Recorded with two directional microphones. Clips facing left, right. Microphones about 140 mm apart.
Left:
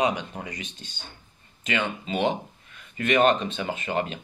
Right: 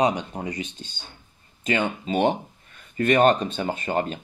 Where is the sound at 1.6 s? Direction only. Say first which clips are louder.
Right 4 dB; 40° right (ahead or behind).